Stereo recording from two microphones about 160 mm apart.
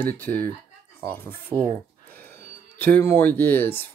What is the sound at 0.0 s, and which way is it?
Speech, 10° left (ahead or behind).